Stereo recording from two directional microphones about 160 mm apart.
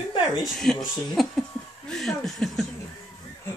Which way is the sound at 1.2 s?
Centre (ahead or behind).